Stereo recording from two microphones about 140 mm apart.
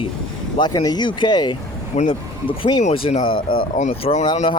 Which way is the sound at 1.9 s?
55° left (ahead or behind).